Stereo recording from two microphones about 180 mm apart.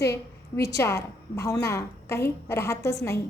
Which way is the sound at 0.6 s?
15° left (ahead or behind).